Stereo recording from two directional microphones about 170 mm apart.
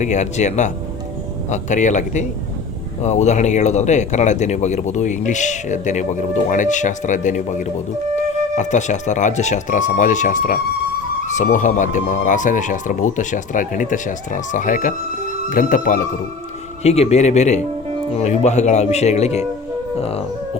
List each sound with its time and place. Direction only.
0.0 s speech: 45° left (ahead or behind)
16.8 s speech: 40° left (ahead or behind)
20.0 s music: 35° left (ahead or behind)